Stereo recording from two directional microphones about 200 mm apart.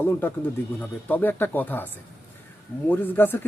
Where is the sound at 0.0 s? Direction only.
10° left (ahead or behind).